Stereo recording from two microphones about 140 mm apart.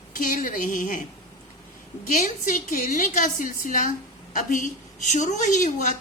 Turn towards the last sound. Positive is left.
turn(degrees=60)  # may be behind; listen again after turning